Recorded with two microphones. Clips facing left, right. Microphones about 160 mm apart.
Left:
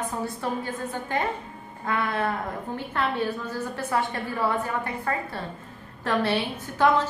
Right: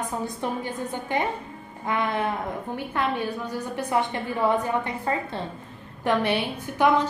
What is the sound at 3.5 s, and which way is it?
A woman's voice, 15° right (ahead or behind).